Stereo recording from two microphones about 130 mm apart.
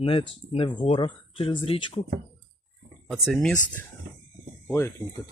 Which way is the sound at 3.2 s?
5° left (ahead or behind).